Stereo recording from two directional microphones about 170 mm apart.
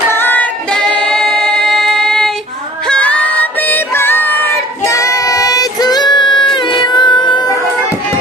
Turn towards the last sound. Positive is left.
turn(degrees=25)  # may be behind; listen again after turning